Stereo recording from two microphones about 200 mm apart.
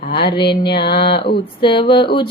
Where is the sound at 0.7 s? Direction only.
55° left (ahead or behind).